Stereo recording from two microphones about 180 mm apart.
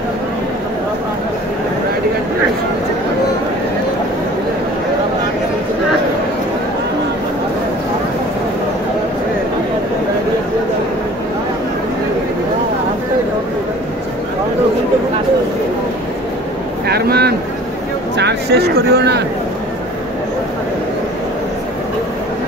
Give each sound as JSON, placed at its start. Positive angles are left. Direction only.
{"t": 16.8, "sound": "vehicle", "side_deg": -60}